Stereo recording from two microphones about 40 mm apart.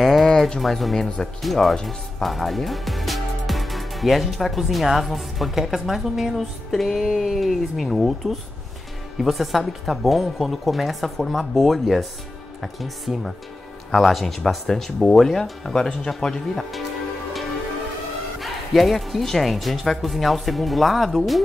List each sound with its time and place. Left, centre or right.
0.0 s music: centre
0.6 s speech: centre
0.9 s speech: centre
1.4 s speech: centre
6.7 s music: centre
7.0 s speech: centre
18.4 s speech: centre